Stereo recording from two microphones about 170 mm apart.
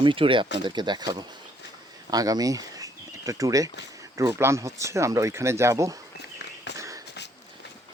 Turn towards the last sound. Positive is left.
turn(degrees=-20)  # may be behind; listen again after turning